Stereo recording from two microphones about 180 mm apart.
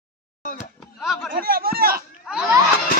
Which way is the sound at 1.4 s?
55° right (ahead or behind).